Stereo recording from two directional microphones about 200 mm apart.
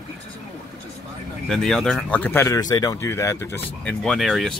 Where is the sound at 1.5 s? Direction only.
Centre (ahead or behind).